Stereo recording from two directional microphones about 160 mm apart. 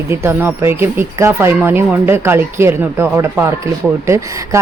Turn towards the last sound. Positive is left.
turn(degrees=-20)  # may be behind; listen again after turning